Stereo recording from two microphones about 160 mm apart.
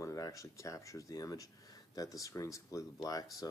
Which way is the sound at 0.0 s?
20° left (ahead or behind).